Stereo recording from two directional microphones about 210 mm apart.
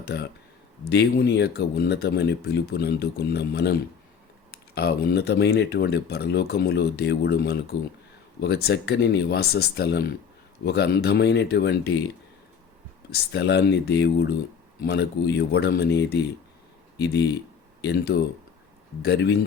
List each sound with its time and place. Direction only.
0.0 s speech: 50° left (ahead or behind)
13.1 s speech: 50° left (ahead or behind)